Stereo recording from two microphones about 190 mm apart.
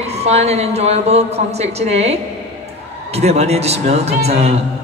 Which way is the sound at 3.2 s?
35° right (ahead or behind).